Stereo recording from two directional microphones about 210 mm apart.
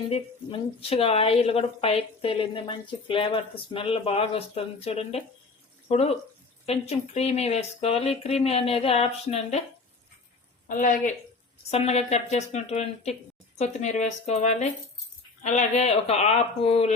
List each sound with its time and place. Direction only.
0.8 s a woman's voice: 25° left (ahead or behind)
10.7 s a woman's voice: 40° left (ahead or behind)